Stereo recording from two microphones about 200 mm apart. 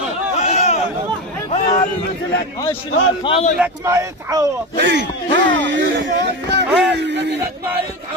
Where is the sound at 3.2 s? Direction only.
30° left (ahead or behind).